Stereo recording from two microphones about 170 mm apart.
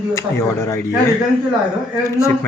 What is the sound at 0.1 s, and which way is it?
Speech, 15° left (ahead or behind).